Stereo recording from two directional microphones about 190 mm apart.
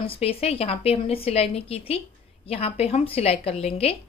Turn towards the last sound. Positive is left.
turn(degrees=30)  # may be behind; listen again after turning